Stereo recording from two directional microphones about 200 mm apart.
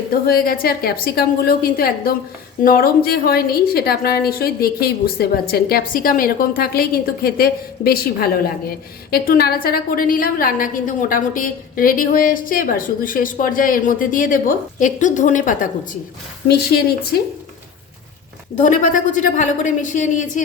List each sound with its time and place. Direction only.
0.1 s a woman's voice: 50° left (ahead or behind)
16.5 s a woman's voice: 55° left (ahead or behind)
18.5 s a woman's voice: 40° left (ahead or behind)